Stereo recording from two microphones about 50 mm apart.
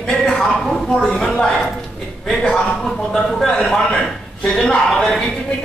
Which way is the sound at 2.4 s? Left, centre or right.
Centre.